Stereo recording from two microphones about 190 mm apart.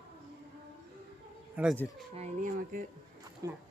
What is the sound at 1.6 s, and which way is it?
Speech, 10° right (ahead or behind).